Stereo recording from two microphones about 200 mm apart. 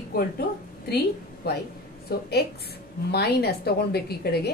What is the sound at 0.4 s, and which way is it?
A woman's voice, 50° left (ahead or behind).